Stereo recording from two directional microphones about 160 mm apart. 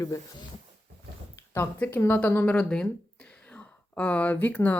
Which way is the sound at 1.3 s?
15° left (ahead or behind).